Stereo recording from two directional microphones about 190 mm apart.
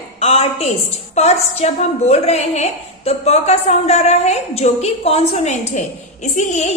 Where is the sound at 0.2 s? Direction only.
30° left (ahead or behind).